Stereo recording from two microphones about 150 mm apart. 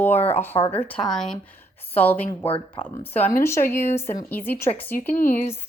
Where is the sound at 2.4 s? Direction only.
40° left (ahead or behind).